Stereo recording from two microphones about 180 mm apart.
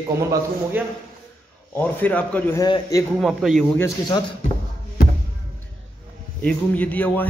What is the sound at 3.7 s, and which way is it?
Speech, 20° left (ahead or behind).